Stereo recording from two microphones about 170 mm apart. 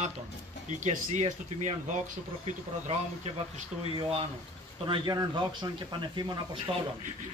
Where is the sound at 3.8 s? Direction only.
35° right (ahead or behind).